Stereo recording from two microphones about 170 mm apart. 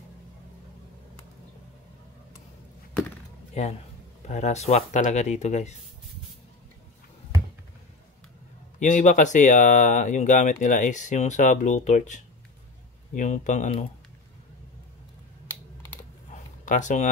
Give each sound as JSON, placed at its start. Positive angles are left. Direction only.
{"t": 4.3, "sound": "speech", "side_deg": 40}
{"t": 8.7, "sound": "speech", "side_deg": 45}
{"t": 16.6, "sound": "speech", "side_deg": 45}